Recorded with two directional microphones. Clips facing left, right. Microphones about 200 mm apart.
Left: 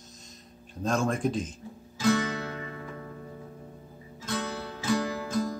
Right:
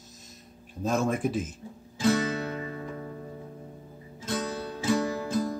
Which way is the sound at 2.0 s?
25° right (ahead or behind).